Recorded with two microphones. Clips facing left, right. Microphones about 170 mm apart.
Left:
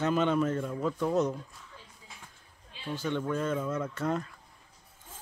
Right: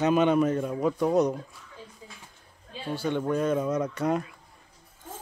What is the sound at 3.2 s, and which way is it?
Speech, 15° right (ahead or behind).